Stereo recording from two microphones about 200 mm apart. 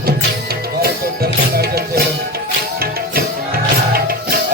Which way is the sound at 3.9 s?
45° right (ahead or behind).